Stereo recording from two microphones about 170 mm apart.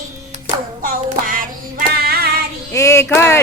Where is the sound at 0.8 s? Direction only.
55° right (ahead or behind).